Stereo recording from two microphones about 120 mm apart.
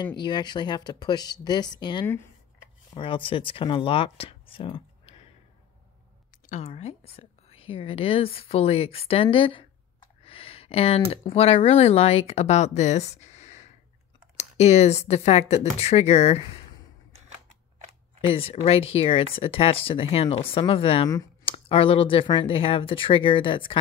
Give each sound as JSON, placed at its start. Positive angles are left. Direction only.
{"t": 0.0, "sound": "speech", "side_deg": 40}
{"t": 6.4, "sound": "a sound", "side_deg": 85}
{"t": 6.7, "sound": "a woman's voice", "side_deg": 55}
{"t": 18.2, "sound": "a woman's voice", "side_deg": 55}